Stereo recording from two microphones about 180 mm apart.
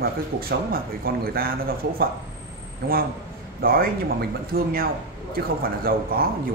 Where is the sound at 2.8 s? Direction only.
55° right (ahead or behind).